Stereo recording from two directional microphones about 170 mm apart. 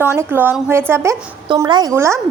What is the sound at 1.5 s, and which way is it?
Speech, 25° right (ahead or behind).